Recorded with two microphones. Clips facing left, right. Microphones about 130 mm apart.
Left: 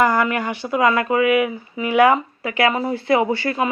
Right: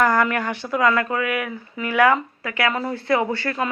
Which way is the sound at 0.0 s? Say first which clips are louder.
Left 1 dB; 5° left (ahead or behind).